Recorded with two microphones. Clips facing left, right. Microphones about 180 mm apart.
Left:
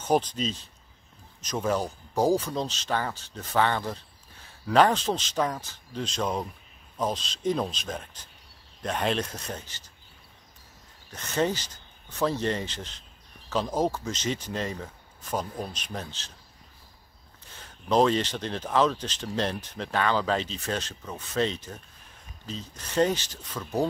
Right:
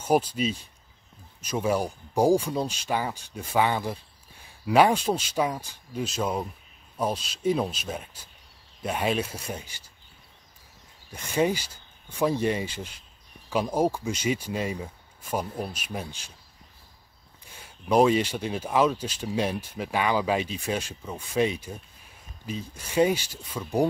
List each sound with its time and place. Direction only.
0.0 s speech: 10° right (ahead or behind)
11.1 s speech: 10° right (ahead or behind)
17.5 s speech: 10° right (ahead or behind)